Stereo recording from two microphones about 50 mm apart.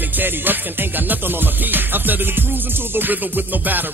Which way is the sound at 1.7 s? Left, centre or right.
Right.